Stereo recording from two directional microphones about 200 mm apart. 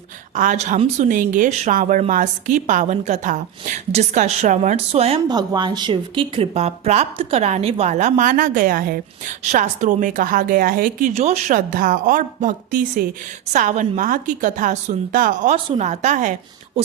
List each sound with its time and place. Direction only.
0.3 s a woman's voice: 40° right (ahead or behind)
11.1 s speech: 35° right (ahead or behind)